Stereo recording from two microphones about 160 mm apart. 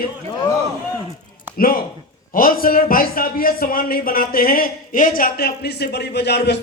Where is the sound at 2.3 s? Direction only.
65° left (ahead or behind).